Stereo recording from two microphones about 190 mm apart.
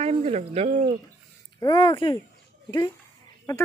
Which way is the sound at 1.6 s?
25° left (ahead or behind).